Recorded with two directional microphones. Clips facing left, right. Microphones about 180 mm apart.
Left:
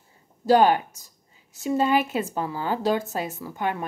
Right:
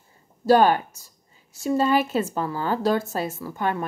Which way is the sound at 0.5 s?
15° left (ahead or behind).